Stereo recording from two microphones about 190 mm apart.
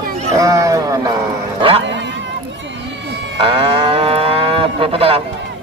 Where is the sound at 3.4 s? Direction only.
30° right (ahead or behind).